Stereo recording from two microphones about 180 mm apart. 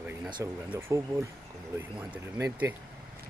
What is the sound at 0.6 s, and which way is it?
Speech, 15° right (ahead or behind).